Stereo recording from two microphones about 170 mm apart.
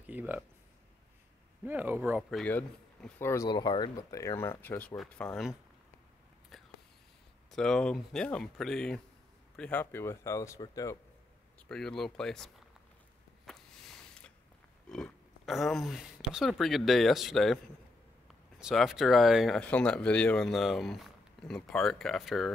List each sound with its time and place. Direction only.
0.0 s a sound: 10° right (ahead or behind)
1.6 s speech: 10° right (ahead or behind)
2.4 s speech: 10° left (ahead or behind)
3.4 s speech: 25° left (ahead or behind); by 5.5 s 5° left (ahead or behind)
6.5 s whispering: centre (ahead or behind)
7.5 s speech: 5° left (ahead or behind); by 11.0 s 20° left (ahead or behind)
11.7 s speech: 5° left (ahead or behind)
13.5 s a sound: 5° left (ahead or behind)
14.9 s speech: centre (ahead or behind)
18.6 s speech: centre (ahead or behind)